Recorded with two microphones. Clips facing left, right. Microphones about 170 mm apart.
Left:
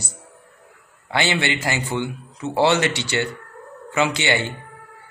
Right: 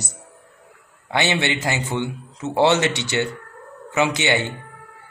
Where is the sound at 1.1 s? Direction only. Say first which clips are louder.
Right 1 dB; 20° right (ahead or behind).